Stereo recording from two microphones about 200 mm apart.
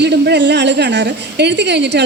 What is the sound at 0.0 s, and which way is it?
A woman's voice, 55° right (ahead or behind).